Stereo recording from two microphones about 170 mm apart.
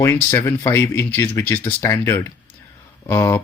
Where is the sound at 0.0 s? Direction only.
15° left (ahead or behind).